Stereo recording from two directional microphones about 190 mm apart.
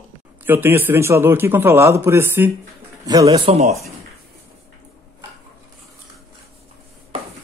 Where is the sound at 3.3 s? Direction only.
30° right (ahead or behind).